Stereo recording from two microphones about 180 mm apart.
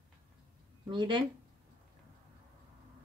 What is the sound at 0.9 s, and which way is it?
Speech, 25° right (ahead or behind).